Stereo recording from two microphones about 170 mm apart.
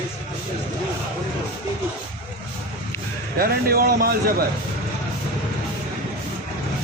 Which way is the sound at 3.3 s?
60° right (ahead or behind).